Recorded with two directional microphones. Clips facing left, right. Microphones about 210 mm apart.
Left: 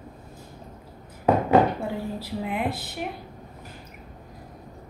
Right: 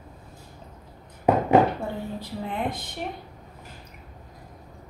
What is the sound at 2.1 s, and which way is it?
Speech, 5° left (ahead or behind).